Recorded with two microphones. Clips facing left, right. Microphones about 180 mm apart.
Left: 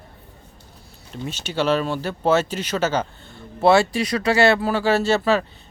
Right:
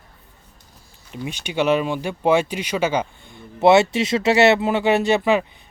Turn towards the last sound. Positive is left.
turn(degrees=-15)  # may be behind; listen again after turning